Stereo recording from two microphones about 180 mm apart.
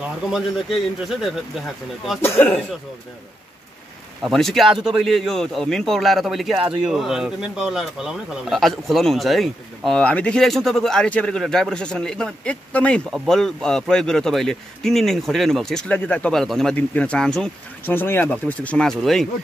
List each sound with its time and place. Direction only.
0.3 s speech: centre (ahead or behind)
2.2 s speech: 15° left (ahead or behind)
4.2 s speech: centre (ahead or behind)